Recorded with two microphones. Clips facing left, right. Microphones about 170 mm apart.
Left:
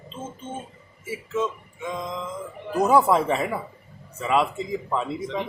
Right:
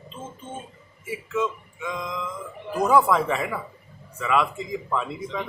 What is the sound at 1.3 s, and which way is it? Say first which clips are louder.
A man's voice: even; 25° left (ahead or behind).